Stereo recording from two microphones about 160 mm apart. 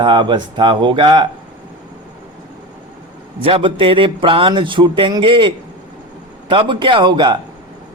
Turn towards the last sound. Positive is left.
turn(degrees=-25)  # may be behind; listen again after turning